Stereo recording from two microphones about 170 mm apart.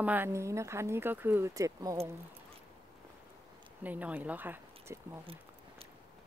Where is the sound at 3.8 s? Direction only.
10° right (ahead or behind).